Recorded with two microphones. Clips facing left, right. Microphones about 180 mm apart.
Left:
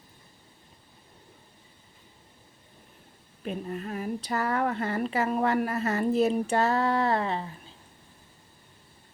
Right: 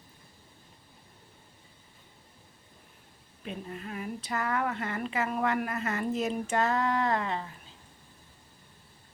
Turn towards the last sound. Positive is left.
turn(degrees=30)  # may be behind; listen again after turning